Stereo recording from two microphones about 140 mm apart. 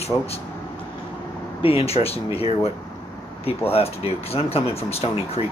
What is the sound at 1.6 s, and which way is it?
Speech, 45° left (ahead or behind).